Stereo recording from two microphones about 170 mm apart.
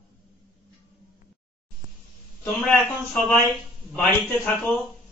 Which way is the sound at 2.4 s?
5° left (ahead or behind).